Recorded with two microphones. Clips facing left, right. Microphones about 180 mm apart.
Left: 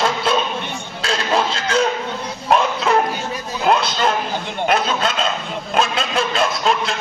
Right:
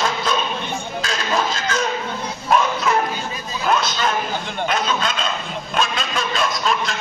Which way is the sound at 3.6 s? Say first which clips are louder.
Left 3 dB; 30° left (ahead or behind).